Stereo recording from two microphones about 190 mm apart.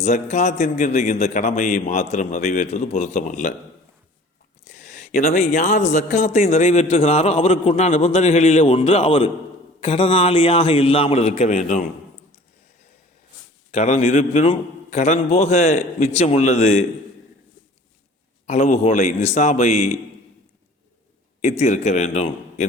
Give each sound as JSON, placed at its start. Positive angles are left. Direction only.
{"t": 0.0, "sound": "a man's voice", "side_deg": 40}
{"t": 4.7, "sound": "a man's voice", "side_deg": 40}
{"t": 13.7, "sound": "a man's voice", "side_deg": 35}
{"t": 18.4, "sound": "a man's voice", "side_deg": 35}
{"t": 21.6, "sound": "a man's voice", "side_deg": 35}